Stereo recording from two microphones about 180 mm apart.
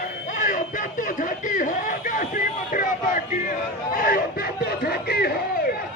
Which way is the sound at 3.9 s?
55° left (ahead or behind).